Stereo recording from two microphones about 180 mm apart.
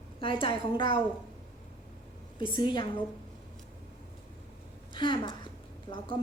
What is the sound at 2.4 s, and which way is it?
Speech, 30° left (ahead or behind).